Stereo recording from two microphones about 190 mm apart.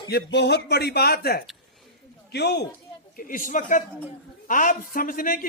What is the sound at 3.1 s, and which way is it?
A man's voice, 45° left (ahead or behind).